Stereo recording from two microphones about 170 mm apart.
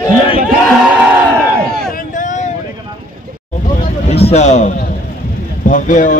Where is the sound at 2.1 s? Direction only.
45° left (ahead or behind).